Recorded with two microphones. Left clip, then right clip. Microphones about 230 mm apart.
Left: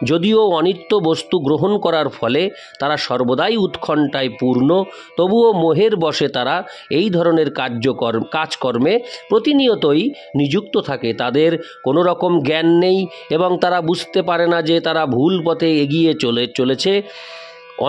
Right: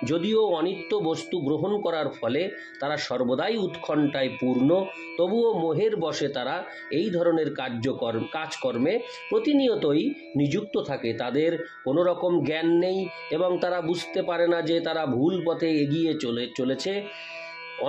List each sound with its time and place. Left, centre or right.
0.0 s speech: left